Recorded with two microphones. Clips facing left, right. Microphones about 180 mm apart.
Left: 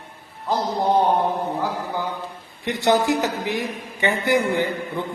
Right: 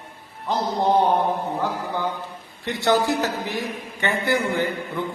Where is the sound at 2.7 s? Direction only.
20° left (ahead or behind).